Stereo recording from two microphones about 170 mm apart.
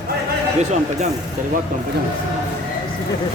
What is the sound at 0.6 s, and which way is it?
Speech, 45° right (ahead or behind).